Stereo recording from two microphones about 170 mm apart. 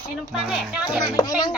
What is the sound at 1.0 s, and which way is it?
Speech, 20° left (ahead or behind).